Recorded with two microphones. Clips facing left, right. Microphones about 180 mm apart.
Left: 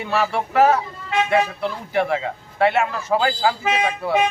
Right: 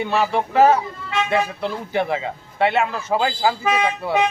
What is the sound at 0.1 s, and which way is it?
Speech, centre (ahead or behind).